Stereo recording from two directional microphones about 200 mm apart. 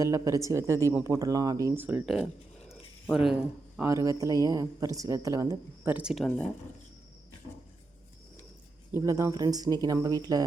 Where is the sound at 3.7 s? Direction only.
15° right (ahead or behind); by 6.5 s centre (ahead or behind).